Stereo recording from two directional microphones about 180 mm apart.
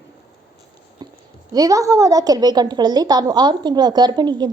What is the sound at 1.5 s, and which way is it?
A woman's voice, 20° right (ahead or behind).